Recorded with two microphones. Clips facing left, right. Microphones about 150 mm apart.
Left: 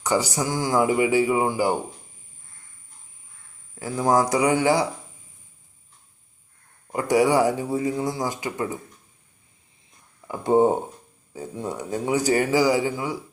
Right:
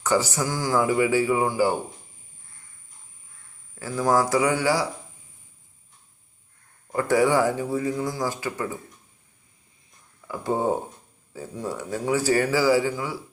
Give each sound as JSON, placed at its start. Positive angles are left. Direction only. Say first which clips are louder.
{"t": 0.0, "sound": "speech", "louder": "even", "side_deg": 15}
{"t": 3.8, "sound": "a man's voice", "louder": "left 1 dB", "side_deg": 20}
{"t": 6.9, "sound": "a man's voice", "louder": "left 1 dB", "side_deg": 15}
{"t": 10.2, "sound": "a man's voice", "louder": "left 6 dB", "side_deg": 20}